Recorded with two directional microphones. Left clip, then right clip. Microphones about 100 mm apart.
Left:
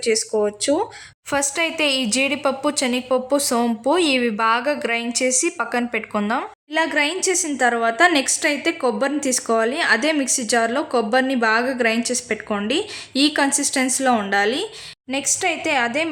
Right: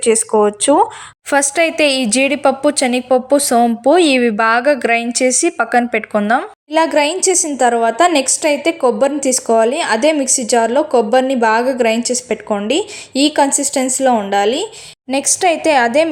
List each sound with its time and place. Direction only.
0.0 s a woman's voice: 50° right (ahead or behind)
1.3 s a woman's voice: 35° right (ahead or behind)
15.1 s a woman's voice: 45° right (ahead or behind)